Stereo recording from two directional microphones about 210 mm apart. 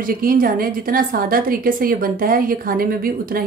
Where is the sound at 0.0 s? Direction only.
45° right (ahead or behind).